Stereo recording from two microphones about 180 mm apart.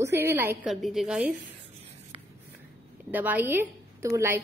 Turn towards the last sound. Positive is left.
turn(degrees=-15)  # may be behind; listen again after turning